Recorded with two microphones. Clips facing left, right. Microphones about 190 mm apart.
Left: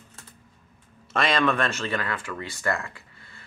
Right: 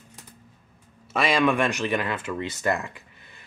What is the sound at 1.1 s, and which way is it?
Speech, 10° right (ahead or behind).